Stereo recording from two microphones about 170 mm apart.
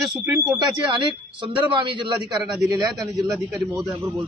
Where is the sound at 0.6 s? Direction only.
25° right (ahead or behind).